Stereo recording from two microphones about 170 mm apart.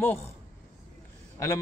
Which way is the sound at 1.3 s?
20° left (ahead or behind).